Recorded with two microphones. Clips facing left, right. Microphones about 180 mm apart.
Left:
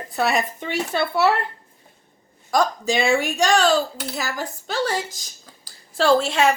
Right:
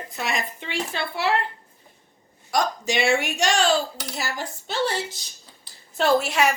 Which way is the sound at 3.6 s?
40° left (ahead or behind).